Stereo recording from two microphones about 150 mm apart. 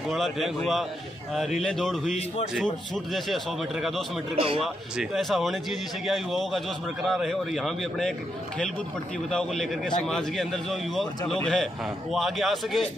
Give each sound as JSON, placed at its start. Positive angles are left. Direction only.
{"t": 0.1, "sound": "a man's voice", "side_deg": 0}
{"t": 2.1, "sound": "a man's voice", "side_deg": 45}
{"t": 2.5, "sound": "a man's voice", "side_deg": 0}
{"t": 4.4, "sound": "speech", "side_deg": -40}
{"t": 4.9, "sound": "a man's voice", "side_deg": 0}
{"t": 9.3, "sound": "a man's voice", "side_deg": 5}